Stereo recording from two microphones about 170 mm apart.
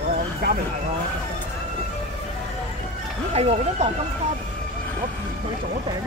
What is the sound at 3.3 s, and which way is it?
Speech, 40° right (ahead or behind).